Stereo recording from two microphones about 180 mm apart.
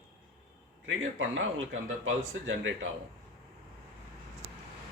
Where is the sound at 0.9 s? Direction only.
90° right.